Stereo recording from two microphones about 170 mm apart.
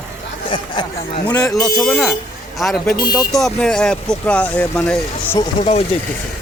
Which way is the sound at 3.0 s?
20° left (ahead or behind).